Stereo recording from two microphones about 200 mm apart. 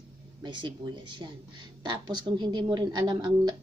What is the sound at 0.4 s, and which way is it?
Speech, 25° right (ahead or behind).